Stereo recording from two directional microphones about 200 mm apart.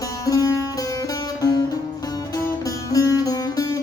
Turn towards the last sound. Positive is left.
turn(degrees=20)  # may be behind; listen again after turning